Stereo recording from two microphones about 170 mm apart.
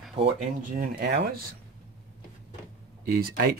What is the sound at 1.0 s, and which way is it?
Speech, 80° right.